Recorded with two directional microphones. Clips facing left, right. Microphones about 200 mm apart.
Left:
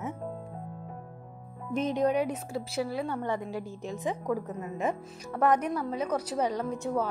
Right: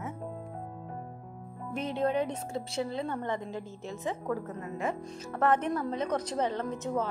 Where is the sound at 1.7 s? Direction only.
15° left (ahead or behind).